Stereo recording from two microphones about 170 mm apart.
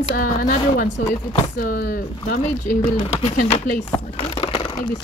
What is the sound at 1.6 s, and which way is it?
Speech, 65° left (ahead or behind).